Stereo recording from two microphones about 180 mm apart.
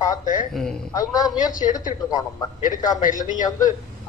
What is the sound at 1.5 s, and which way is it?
Speech, 45° left (ahead or behind).